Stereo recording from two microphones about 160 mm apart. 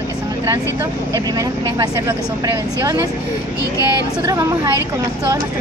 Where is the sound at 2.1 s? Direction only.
20° right (ahead or behind).